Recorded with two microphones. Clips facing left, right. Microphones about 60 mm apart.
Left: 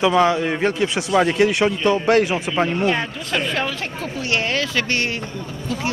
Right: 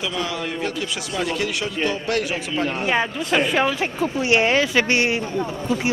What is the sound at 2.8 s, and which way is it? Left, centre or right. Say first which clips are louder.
Speech: left 1 dB; centre.